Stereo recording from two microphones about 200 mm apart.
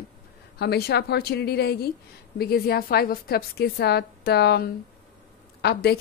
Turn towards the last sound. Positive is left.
turn(degrees=55)  # may be behind; listen again after turning